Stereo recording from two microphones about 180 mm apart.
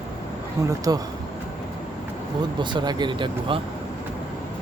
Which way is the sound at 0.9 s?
20° right (ahead or behind).